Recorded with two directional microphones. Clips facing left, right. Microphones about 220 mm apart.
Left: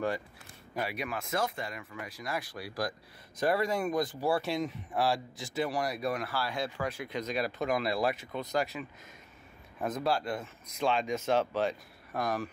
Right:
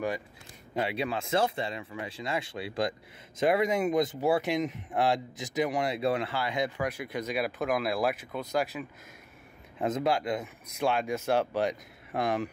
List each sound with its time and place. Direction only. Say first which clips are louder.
0.7 s speech: right 5 dB; 25° right (ahead or behind); by 8.8 s centre (ahead or behind)
9.8 s speech: right 3 dB; 20° right (ahead or behind)
12.1 s speech: right 3 dB; 25° right (ahead or behind)